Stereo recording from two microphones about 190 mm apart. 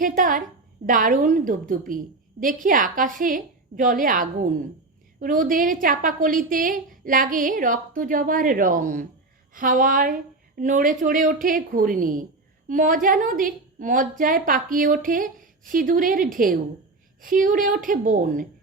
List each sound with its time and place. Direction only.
0.0 s a woman's voice: 45° right (ahead or behind)